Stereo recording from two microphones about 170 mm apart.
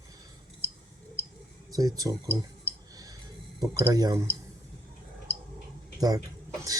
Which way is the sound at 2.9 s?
20° right (ahead or behind).